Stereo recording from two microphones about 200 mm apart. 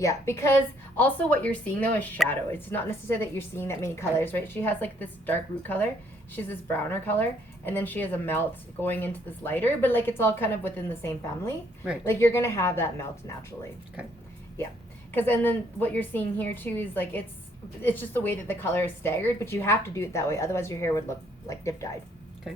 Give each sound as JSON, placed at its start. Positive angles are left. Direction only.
{"t": 0.0, "sound": "a woman's voice", "side_deg": 15}
{"t": 15.1, "sound": "a woman's voice", "side_deg": 10}